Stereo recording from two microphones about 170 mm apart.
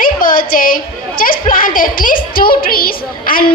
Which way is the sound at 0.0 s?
55° left (ahead or behind).